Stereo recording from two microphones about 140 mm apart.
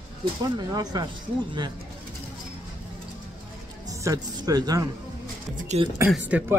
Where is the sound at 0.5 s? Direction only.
30° right (ahead or behind).